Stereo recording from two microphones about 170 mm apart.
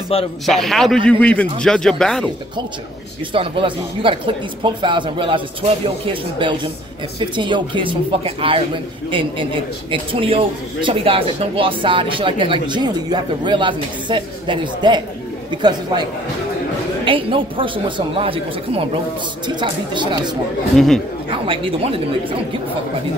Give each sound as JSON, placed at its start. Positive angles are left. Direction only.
{"t": 0.5, "sound": "a man's voice", "side_deg": 0}
{"t": 3.3, "sound": "speech", "side_deg": -30}
{"t": 20.7, "sound": "a man's voice", "side_deg": 0}
{"t": 21.5, "sound": "speech", "side_deg": -35}